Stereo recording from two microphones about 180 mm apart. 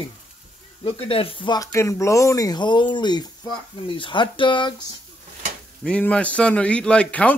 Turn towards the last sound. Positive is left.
turn(degrees=5)  # may be behind; listen again after turning